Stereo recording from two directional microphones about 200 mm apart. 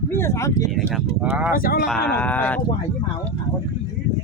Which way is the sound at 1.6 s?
45° left (ahead or behind).